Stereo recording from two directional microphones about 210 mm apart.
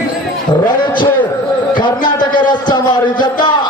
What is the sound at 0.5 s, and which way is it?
Speech, 20° left (ahead or behind).